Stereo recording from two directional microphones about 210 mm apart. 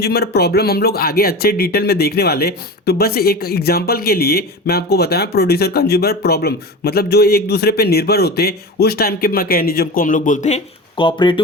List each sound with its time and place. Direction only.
0.0 s speech: 50° left (ahead or behind); by 11.3 s 25° left (ahead or behind)